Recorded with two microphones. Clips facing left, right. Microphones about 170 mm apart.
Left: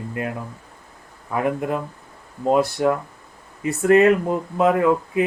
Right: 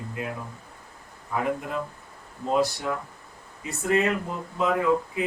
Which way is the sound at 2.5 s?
55° left (ahead or behind).